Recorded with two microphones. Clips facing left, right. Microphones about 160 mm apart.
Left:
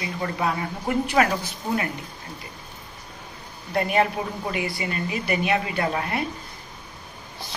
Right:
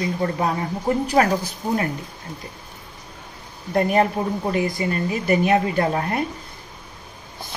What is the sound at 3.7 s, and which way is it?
A woman's voice, 40° right (ahead or behind).